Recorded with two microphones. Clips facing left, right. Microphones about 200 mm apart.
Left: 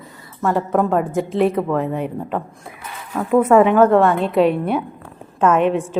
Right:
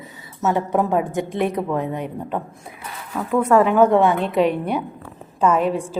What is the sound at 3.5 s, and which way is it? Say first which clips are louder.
Speech: left 1 dB; centre (ahead or behind).